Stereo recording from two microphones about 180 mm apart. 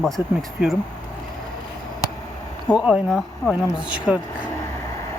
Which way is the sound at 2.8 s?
5° right (ahead or behind).